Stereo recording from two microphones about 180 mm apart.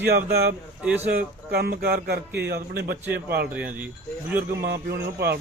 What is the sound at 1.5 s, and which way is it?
A man's voice, 60° right (ahead or behind).